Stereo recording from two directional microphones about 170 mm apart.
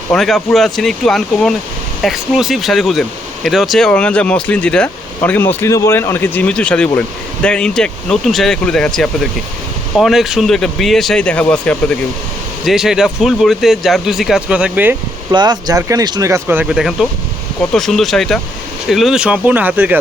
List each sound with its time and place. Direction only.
0.1 s speech: centre (ahead or behind)
12.6 s speech: 5° right (ahead or behind)
15.3 s speech: 25° right (ahead or behind)